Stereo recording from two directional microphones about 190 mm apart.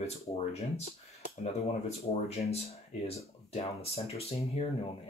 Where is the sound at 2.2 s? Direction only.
35° left (ahead or behind).